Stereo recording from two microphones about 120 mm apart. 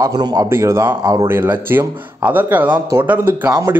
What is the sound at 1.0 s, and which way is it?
Speech, 35° right (ahead or behind).